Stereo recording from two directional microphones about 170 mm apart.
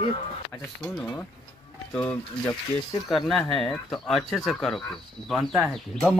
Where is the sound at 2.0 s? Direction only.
10° left (ahead or behind).